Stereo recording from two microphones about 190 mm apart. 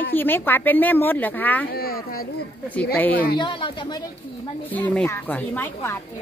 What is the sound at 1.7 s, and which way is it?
Speech, 50° left (ahead or behind).